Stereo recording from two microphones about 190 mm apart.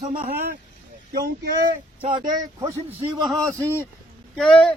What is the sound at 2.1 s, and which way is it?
Speech, 25° right (ahead or behind).